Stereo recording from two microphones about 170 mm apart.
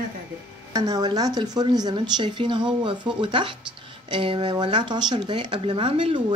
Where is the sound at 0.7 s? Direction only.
25° right (ahead or behind).